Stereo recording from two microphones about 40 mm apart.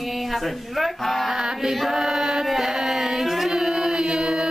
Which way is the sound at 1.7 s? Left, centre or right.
Centre.